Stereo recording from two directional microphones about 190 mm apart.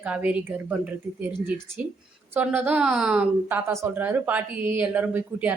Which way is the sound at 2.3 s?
10° right (ahead or behind).